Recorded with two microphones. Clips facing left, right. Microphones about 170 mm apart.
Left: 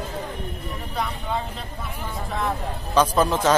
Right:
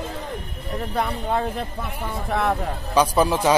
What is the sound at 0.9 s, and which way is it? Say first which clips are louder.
Speech: right 3 dB; 55° right (ahead or behind).